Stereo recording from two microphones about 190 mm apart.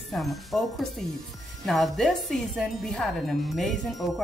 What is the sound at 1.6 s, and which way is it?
Speech, centre (ahead or behind).